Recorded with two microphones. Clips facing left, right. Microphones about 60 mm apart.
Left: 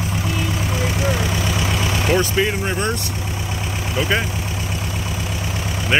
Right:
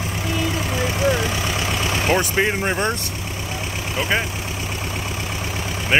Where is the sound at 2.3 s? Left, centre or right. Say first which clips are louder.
Even; right.